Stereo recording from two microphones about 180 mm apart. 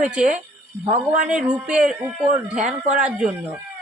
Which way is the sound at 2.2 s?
40° right (ahead or behind).